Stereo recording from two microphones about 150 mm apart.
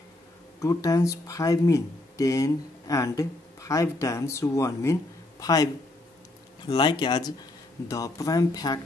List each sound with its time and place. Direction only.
0.6 s speech: 25° left (ahead or behind)
6.7 s speech: 30° left (ahead or behind)